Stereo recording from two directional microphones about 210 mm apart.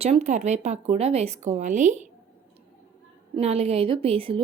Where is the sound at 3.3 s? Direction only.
30° right (ahead or behind).